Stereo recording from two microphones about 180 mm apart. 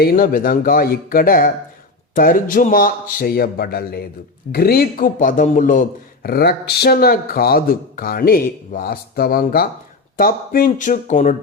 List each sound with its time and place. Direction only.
0.0 s a man's voice: 55° left (ahead or behind)
6.2 s a man's voice: 60° left (ahead or behind)